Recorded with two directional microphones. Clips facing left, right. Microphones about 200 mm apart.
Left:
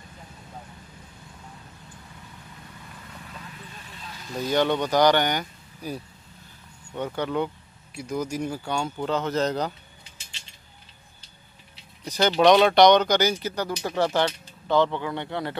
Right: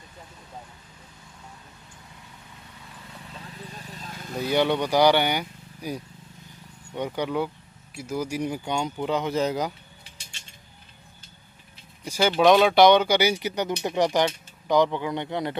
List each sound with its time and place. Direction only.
3.7 s a sound: 40° right (ahead or behind)
4.4 s speech: 10° right (ahead or behind)
12.0 s speech: 10° right (ahead or behind)